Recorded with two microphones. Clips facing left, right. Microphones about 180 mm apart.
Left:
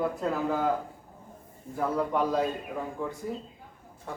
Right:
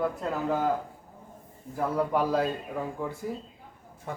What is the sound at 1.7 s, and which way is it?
Speech, 5° right (ahead or behind).